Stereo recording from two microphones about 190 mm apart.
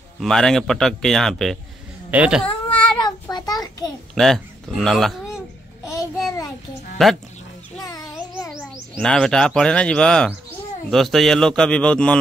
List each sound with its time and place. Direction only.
0.2 s a man's voice: centre (ahead or behind)
2.4 s baby cry: 5° left (ahead or behind)
3.0 s child singing: 20° left (ahead or behind)
4.1 s speech: centre (ahead or behind)
7.0 s a man's voice: centre (ahead or behind)
8.5 s a man's voice: 5° left (ahead or behind)